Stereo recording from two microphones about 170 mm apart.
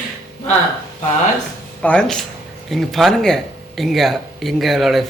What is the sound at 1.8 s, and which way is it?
Speech, 5° left (ahead or behind).